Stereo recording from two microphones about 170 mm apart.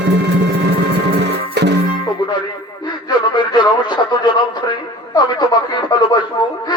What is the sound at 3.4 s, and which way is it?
Radio, 25° left (ahead or behind).